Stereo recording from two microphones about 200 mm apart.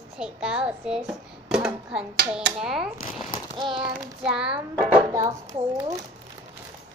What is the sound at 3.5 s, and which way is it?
Child singing, 25° right (ahead or behind).